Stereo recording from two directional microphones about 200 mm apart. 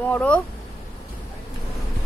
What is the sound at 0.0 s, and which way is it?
Speech, 5° left (ahead or behind).